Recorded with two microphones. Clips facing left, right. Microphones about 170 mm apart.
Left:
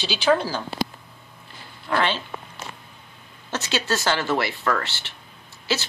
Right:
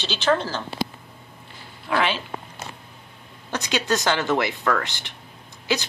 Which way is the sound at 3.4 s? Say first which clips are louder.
Right 2 dB; 15° right (ahead or behind).